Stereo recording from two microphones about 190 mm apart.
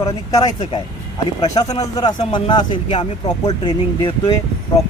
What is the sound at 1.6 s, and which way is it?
Speech, 35° left (ahead or behind).